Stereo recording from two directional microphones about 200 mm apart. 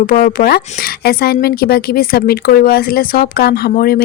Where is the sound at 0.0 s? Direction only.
45° left (ahead or behind).